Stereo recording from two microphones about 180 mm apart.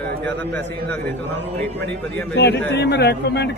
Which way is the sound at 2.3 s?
70° left (ahead or behind).